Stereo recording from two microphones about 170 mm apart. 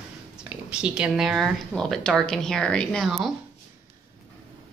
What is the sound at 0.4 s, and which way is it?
A woman's voice, 5° right (ahead or behind).